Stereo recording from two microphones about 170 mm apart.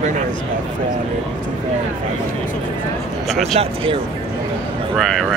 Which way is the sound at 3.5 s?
30° right (ahead or behind).